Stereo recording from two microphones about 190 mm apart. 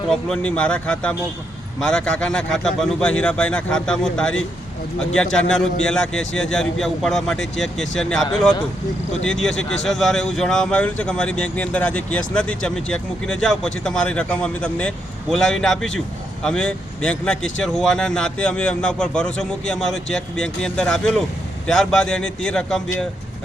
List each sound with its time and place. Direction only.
0.1 s a man's voice: 5° left (ahead or behind)
9.2 s a man's voice: 5° left (ahead or behind)